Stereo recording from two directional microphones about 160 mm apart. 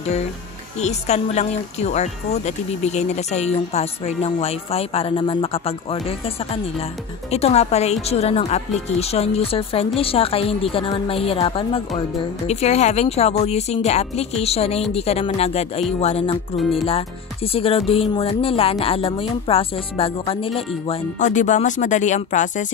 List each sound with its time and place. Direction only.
0.7 s speech: 45° left (ahead or behind)
21.2 s speech: 50° left (ahead or behind)